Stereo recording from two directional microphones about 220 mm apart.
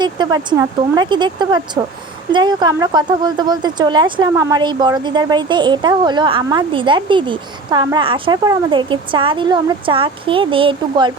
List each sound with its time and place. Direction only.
0.0 s speech: 20° right (ahead or behind)